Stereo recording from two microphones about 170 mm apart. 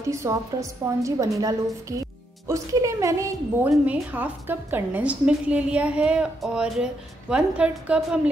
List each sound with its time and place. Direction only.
0.1 s a woman's voice: 15° right (ahead or behind)